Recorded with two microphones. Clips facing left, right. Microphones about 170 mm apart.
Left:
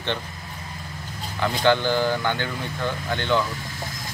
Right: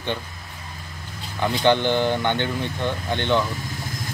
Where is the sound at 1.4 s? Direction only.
20° right (ahead or behind).